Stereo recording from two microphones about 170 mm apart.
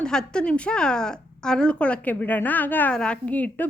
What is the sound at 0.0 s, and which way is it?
Speech, 5° left (ahead or behind).